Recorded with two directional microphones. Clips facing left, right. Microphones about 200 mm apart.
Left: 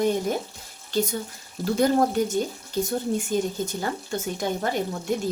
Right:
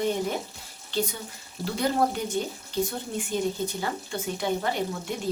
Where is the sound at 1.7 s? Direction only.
45° left (ahead or behind).